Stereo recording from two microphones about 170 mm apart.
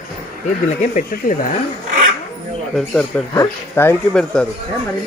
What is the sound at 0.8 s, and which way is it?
Speech, 50° left (ahead or behind).